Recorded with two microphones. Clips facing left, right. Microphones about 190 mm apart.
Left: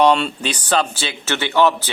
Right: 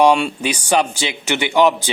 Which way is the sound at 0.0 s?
10° right (ahead or behind).